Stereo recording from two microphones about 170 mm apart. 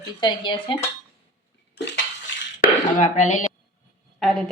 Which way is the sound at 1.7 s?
90° left.